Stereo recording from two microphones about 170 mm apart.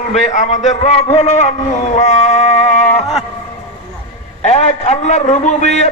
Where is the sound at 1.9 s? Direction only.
45° left (ahead or behind).